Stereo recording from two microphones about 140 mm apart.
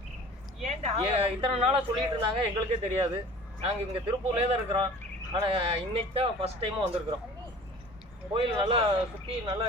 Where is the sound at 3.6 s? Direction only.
45° right (ahead or behind).